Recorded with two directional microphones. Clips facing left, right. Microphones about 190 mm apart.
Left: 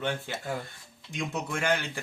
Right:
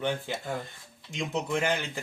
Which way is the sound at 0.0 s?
15° right (ahead or behind).